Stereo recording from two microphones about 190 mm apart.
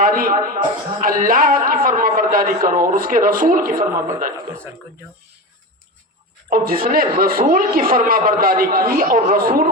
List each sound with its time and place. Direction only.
0.0 s a man's voice: 50° right (ahead or behind)
6.5 s a man's voice: 50° right (ahead or behind)